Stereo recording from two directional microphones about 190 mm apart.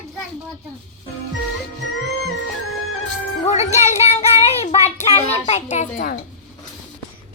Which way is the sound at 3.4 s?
35° left (ahead or behind).